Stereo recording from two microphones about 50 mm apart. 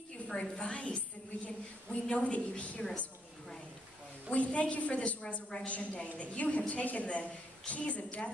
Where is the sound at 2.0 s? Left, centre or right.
Left.